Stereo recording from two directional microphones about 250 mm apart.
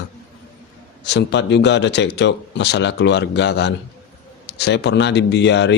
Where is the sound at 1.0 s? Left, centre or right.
Left.